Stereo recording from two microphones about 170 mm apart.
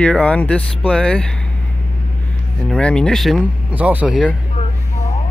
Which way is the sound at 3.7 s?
10° right (ahead or behind).